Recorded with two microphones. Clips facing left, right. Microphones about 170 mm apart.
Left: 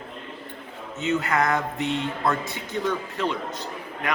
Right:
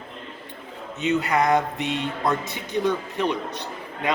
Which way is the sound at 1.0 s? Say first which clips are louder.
Right 2 dB; 20° right (ahead or behind).